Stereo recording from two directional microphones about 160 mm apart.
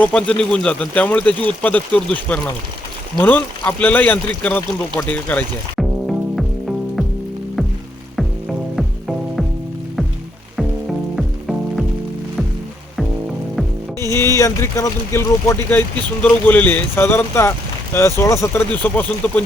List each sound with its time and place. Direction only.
0.0 s speech: 5° left (ahead or behind)
6.3 s music: centre (ahead or behind)
8.1 s frying: centre (ahead or behind)
11.1 s frying: centre (ahead or behind)
14.0 s speech: 15° left (ahead or behind)